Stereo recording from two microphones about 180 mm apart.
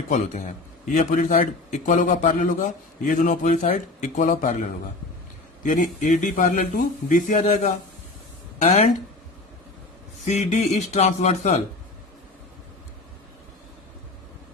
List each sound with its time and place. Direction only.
0.9 s a man's voice: 45° left (ahead or behind)
5.6 s a man's voice: 45° left (ahead or behind)
10.2 s a man's voice: 40° left (ahead or behind)